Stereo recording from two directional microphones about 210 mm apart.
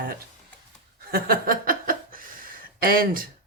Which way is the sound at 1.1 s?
45° right (ahead or behind).